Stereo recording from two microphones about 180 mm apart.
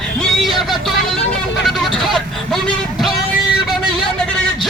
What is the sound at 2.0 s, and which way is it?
Vehicle, centre (ahead or behind).